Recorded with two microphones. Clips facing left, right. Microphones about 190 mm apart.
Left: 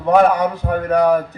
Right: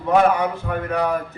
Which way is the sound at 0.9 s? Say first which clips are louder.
Left 8 dB; 40° left (ahead or behind).